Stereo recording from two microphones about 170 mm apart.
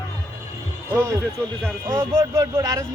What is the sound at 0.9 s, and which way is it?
A man's voice, 20° right (ahead or behind).